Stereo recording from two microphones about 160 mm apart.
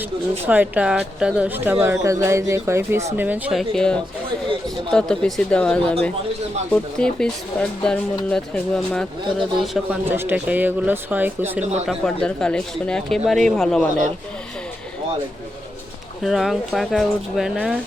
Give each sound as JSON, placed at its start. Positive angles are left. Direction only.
{"t": 0.0, "sound": "speech", "side_deg": -10}
{"t": 10.1, "sound": "speech", "side_deg": -15}
{"t": 11.9, "sound": "speech", "side_deg": 5}
{"t": 16.2, "sound": "speech", "side_deg": 0}